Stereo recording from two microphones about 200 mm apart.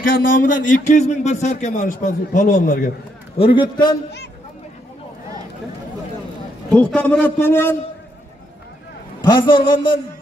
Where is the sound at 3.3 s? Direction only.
25° left (ahead or behind).